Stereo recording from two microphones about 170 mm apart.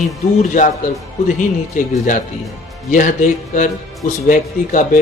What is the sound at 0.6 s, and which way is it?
Speech, 45° left (ahead or behind).